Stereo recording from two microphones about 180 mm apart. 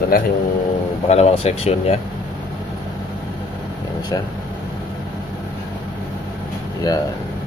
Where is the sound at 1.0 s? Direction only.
35° left (ahead or behind).